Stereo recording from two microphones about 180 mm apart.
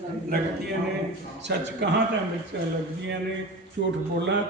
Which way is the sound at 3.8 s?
75° right (ahead or behind).